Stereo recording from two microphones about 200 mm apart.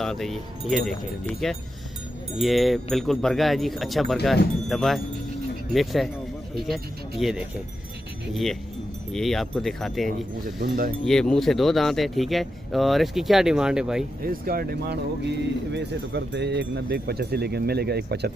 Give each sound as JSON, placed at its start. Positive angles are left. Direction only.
{"t": 0.0, "sound": "speech", "side_deg": 0}
{"t": 9.1, "sound": "speech", "side_deg": 0}
{"t": 10.4, "sound": "speech", "side_deg": -45}
{"t": 11.1, "sound": "speech", "side_deg": 0}
{"t": 14.2, "sound": "speech", "side_deg": -45}